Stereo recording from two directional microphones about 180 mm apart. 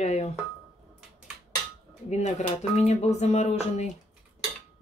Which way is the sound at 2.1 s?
40° left (ahead or behind).